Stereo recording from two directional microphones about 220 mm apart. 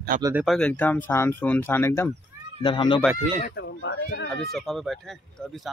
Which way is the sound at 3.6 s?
55° left (ahead or behind).